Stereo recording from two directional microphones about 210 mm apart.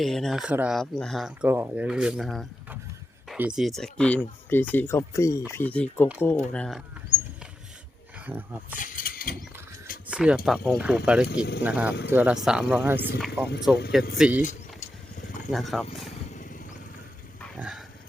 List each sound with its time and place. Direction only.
0.0 s speech: centre (ahead or behind)
8.3 s speech: 10° right (ahead or behind)
8.8 s mechanisms: 40° left (ahead or behind)
10.1 s speech: 5° right (ahead or behind)
11.3 s speech: 50° left (ahead or behind)
11.6 s speech: 5° right (ahead or behind)
15.4 s speech: centre (ahead or behind)
17.6 s pig: 5° right (ahead or behind)